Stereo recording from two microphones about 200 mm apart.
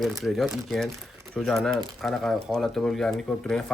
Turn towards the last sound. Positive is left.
turn(degrees=5)  # may be behind; listen again after turning